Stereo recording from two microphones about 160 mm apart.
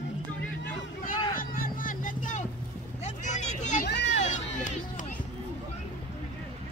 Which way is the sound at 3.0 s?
50° left (ahead or behind).